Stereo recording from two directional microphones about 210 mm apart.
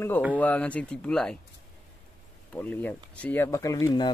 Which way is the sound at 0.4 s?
5° left (ahead or behind).